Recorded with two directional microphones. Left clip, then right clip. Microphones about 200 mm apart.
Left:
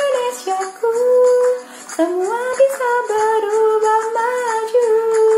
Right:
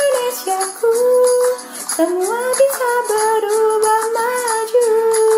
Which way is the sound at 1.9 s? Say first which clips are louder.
Right 1 dB; 15° right (ahead or behind).